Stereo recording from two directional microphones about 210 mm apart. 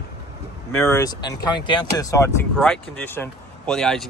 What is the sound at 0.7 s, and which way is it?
Speech, 15° left (ahead or behind).